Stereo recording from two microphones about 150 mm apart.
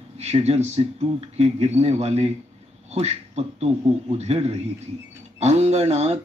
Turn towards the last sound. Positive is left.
turn(degrees=-45)  # may be behind; listen again after turning